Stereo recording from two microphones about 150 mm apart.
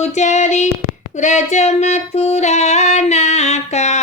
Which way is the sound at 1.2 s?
55° left (ahead or behind).